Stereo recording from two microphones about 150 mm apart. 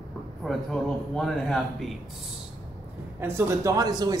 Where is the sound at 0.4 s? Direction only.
Centre (ahead or behind).